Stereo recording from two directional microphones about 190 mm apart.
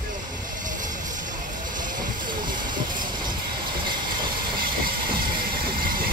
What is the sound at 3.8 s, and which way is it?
Train, 25° right (ahead or behind).